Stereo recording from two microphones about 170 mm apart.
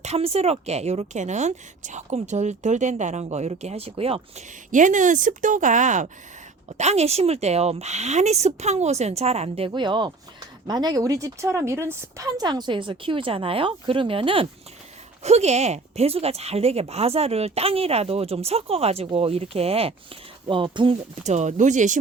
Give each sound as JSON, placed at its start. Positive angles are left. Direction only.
{"t": 0.0, "sound": "speech", "side_deg": -40}
{"t": 4.7, "sound": "speech", "side_deg": -50}
{"t": 21.2, "sound": "speech", "side_deg": -45}